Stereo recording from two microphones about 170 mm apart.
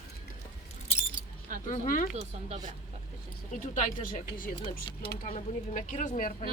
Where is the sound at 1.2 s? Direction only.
50° left (ahead or behind).